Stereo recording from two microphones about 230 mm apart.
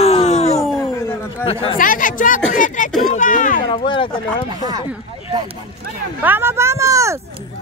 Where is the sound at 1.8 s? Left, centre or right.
Left.